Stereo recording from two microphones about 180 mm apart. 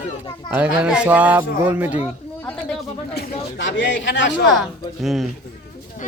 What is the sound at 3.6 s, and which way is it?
Speech, 90° left.